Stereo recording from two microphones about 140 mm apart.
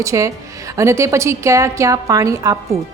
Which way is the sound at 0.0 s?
20° right (ahead or behind).